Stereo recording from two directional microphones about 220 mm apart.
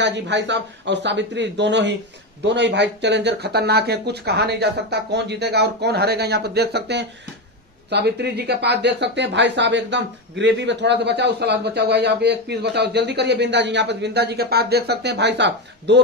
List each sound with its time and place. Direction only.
0.0 s speech: 55° right (ahead or behind)